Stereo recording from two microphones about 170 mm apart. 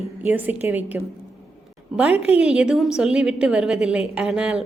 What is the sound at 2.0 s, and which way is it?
A woman's voice, 10° right (ahead or behind).